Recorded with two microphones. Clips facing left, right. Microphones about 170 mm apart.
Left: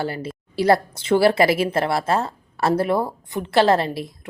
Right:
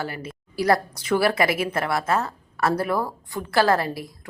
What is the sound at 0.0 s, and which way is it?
A woman's voice, 30° left (ahead or behind).